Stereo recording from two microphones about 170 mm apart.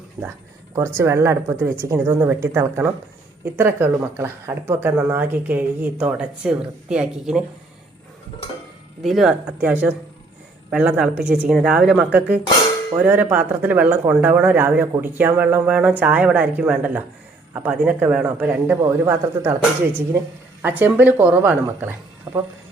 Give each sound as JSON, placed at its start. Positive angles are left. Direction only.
{"t": 0.2, "sound": "speech", "side_deg": -5}
{"t": 0.8, "sound": "speech", "side_deg": -15}
{"t": 9.0, "sound": "speech", "side_deg": 0}